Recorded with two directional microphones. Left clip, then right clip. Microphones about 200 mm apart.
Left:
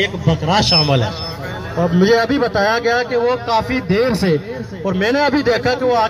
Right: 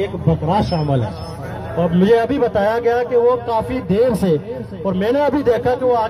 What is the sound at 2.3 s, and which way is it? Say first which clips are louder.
Speech: left 1 dB; 60° left (ahead or behind).